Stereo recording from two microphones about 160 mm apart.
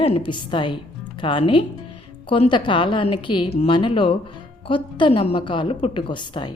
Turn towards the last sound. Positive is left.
turn(degrees=30)  # may be behind; listen again after turning